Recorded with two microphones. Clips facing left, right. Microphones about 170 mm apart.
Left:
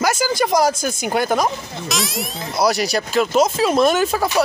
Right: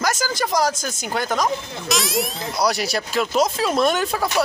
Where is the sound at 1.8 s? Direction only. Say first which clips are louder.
Right 3 dB; centre (ahead or behind).